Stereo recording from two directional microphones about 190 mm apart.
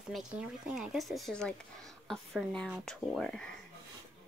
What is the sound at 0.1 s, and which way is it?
Speech, 5° right (ahead or behind).